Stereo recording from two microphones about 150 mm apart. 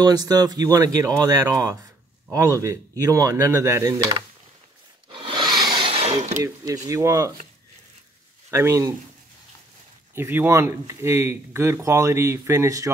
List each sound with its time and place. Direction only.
0.0 s speech: 25° right (ahead or behind)
5.1 s sawing: 35° right (ahead or behind)
6.4 s speech: 25° right (ahead or behind)
8.5 s speech: 20° right (ahead or behind)
10.1 s speech: 15° right (ahead or behind)